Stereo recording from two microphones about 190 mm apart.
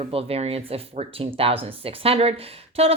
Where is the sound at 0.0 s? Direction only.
30° right (ahead or behind).